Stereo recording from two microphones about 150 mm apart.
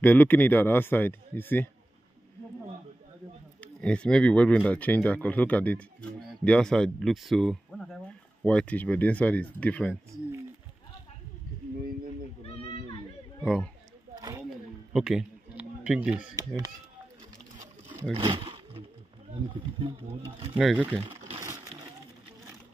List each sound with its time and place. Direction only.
0.0 s speech: 10° left (ahead or behind)
3.6 s speech: 5° left (ahead or behind)
13.4 s speech: 5° left (ahead or behind)
14.5 s a sound: 5° right (ahead or behind)
16.3 s speech: 25° right (ahead or behind)
18.1 s speech: 35° right (ahead or behind)
20.5 s speech: 5° right (ahead or behind)
21.4 s splash: 20° right (ahead or behind)